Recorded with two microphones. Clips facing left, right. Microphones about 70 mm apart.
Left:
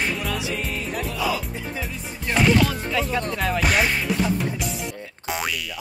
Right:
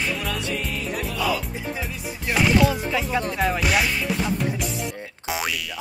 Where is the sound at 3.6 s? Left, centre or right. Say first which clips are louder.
Left 4 dB; left.